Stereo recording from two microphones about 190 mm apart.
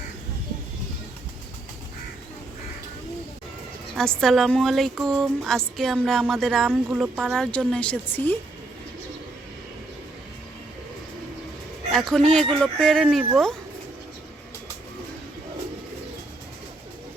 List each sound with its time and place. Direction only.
4.2 s speech: centre (ahead or behind)
11.9 s speech: centre (ahead or behind)